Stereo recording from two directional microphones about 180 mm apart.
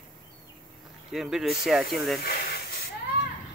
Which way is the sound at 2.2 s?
60° left (ahead or behind).